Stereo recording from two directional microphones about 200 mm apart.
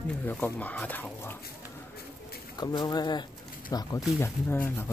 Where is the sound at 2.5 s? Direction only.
20° left (ahead or behind).